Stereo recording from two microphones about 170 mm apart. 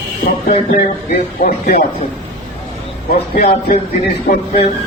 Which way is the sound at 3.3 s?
55° left (ahead or behind).